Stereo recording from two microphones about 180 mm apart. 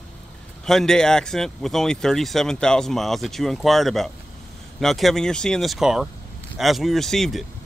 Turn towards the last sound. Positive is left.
turn(degrees=0)  # may be behind; listen again after turning